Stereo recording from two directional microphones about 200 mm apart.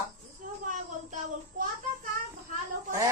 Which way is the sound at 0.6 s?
40° right (ahead or behind).